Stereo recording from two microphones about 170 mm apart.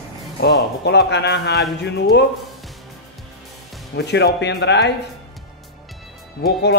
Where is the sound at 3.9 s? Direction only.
85° left.